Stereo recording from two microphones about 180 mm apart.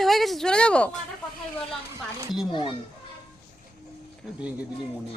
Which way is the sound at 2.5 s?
30° left (ahead or behind).